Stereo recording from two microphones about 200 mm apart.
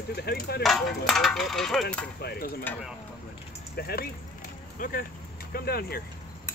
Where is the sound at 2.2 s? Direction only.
50° left (ahead or behind).